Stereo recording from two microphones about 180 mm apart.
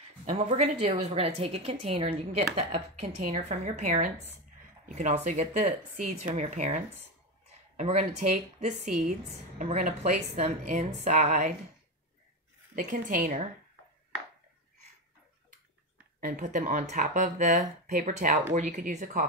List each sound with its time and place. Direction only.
0.3 s a woman's voice: 35° right (ahead or behind)
12.7 s speech: 50° right (ahead or behind)
16.3 s speech: 45° right (ahead or behind)